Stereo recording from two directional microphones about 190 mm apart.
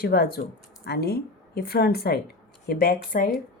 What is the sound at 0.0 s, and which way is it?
A woman's voice, 55° left (ahead or behind).